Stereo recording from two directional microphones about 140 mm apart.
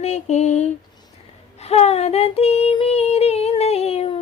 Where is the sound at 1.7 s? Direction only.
50° left (ahead or behind).